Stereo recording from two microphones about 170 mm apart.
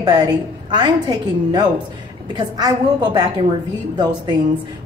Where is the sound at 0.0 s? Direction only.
25° right (ahead or behind).